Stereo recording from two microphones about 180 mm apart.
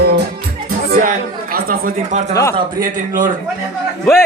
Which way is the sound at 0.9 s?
50° right (ahead or behind).